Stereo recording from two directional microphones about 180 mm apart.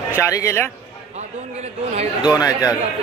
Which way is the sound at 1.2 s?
35° right (ahead or behind).